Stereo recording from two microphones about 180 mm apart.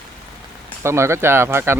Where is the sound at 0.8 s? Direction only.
15° right (ahead or behind).